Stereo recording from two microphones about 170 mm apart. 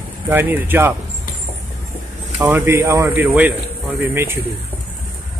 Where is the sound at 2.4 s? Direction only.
15° right (ahead or behind).